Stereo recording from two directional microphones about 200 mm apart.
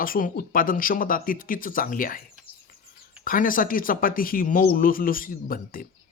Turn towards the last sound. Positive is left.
turn(degrees=45)  # may be behind; listen again after turning